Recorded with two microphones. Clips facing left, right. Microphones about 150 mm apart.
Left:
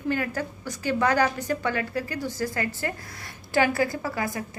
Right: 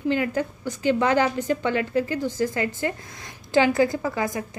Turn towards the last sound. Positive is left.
turn(degrees=-20)  # may be behind; listen again after turning